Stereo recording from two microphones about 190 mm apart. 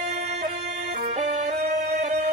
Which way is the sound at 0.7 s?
55° right (ahead or behind).